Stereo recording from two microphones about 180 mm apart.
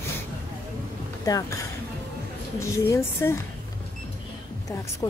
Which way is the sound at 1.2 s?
20° left (ahead or behind).